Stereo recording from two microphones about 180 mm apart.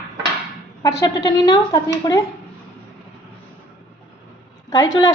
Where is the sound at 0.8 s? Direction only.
15° left (ahead or behind).